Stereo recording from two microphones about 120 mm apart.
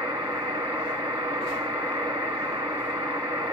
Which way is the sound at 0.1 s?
35° right (ahead or behind).